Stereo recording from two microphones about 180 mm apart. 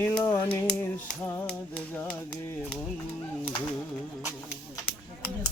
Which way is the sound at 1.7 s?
10° left (ahead or behind).